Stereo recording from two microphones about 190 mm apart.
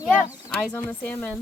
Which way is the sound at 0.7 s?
10° left (ahead or behind).